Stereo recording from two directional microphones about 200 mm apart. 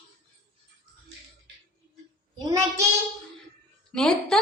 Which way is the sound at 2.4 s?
15° right (ahead or behind).